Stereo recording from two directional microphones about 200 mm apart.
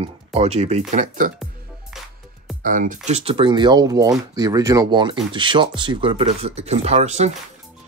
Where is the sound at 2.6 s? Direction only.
40° right (ahead or behind).